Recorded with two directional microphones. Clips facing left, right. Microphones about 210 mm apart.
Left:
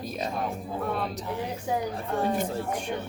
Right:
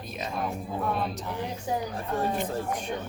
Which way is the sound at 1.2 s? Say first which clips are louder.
Left 1 dB; centre (ahead or behind).